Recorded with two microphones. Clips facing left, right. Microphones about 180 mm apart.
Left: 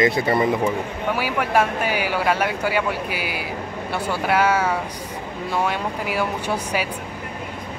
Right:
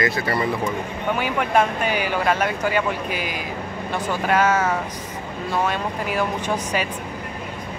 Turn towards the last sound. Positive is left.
turn(degrees=10)  # may be behind; listen again after turning